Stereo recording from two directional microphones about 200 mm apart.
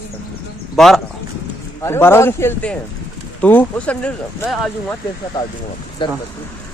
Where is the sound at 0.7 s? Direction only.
Centre (ahead or behind).